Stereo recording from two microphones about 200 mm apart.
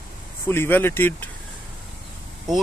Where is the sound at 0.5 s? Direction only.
10° left (ahead or behind).